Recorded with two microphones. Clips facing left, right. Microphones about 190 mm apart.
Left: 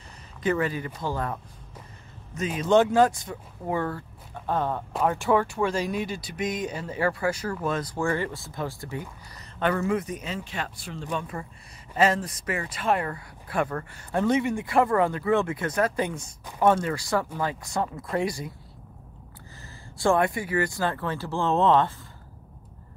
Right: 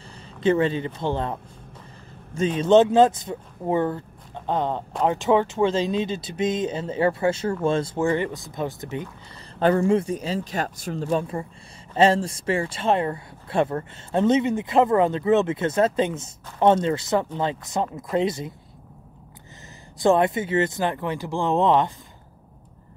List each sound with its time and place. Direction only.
0.4 s speech: 25° right (ahead or behind)
9.6 s speech: 30° right (ahead or behind)
20.0 s speech: 20° right (ahead or behind)